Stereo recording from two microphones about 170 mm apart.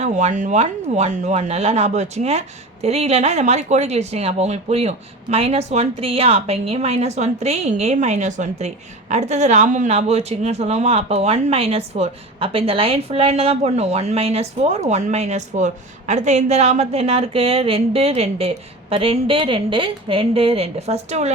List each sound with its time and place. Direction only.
0.0 s speech: 45° right (ahead or behind)